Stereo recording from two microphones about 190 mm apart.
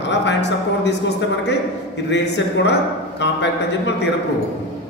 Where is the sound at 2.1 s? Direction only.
65° left (ahead or behind).